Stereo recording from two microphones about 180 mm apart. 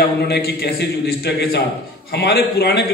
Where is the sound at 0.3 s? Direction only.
60° left (ahead or behind).